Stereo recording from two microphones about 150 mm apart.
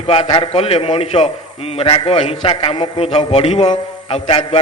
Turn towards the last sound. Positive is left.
turn(degrees=40)  # may be behind; listen again after turning